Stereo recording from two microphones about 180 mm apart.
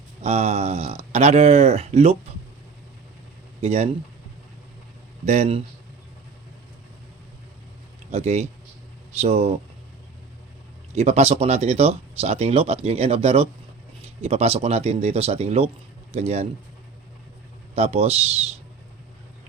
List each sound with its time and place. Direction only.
0.2 s speech: 35° right (ahead or behind)
3.6 s speech: 35° right (ahead or behind)
5.2 s speech: 40° right (ahead or behind)
8.1 s speech: 35° right (ahead or behind)
10.9 s speech: 35° right (ahead or behind)
17.7 s speech: 35° right (ahead or behind)